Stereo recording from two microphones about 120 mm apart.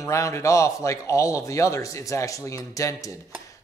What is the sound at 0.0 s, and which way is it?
Speech, 25° left (ahead or behind).